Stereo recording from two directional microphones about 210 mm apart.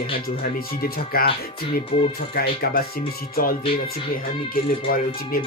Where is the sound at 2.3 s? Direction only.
45° left (ahead or behind).